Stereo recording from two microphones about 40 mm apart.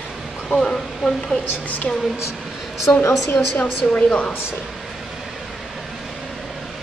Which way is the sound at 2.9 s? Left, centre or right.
Left.